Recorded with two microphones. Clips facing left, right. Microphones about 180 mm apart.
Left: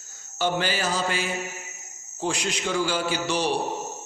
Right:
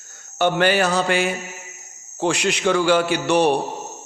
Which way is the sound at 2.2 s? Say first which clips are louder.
Right 8 dB; 75° right (ahead or behind).